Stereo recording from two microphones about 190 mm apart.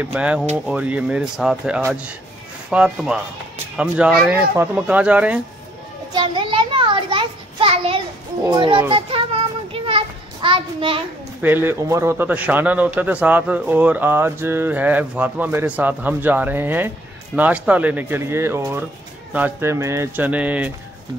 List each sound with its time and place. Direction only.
0.0 s speech: 5° right (ahead or behind)
6.1 s a sound: 25° right (ahead or behind)
8.5 s a child's voice: 25° right (ahead or behind)
9.7 s children playing: 30° right (ahead or behind)
11.4 s speech: 10° right (ahead or behind)